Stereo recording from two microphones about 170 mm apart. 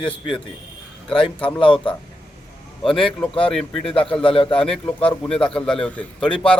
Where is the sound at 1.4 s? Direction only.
5° left (ahead or behind).